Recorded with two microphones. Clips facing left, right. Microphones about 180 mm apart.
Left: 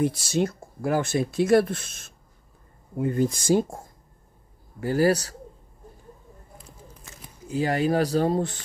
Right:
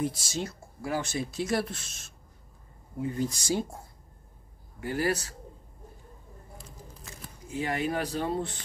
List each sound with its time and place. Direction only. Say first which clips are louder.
0.0 s speech: left 8 dB; 65° left (ahead or behind)
4.7 s speech: left 8 dB; 40° left (ahead or behind)
7.4 s speech: left 7 dB; 35° left (ahead or behind)